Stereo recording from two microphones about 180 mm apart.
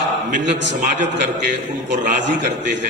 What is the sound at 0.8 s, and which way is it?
Mantra, 45° right (ahead or behind).